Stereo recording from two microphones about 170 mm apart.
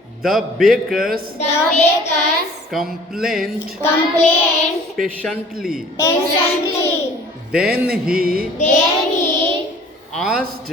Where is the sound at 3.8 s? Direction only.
15° left (ahead or behind).